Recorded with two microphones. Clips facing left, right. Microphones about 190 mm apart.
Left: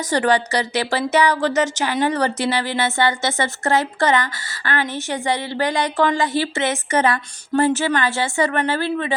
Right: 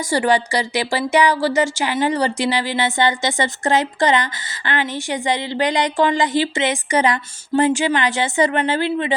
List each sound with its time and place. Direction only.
0.0 s speech: 10° right (ahead or behind)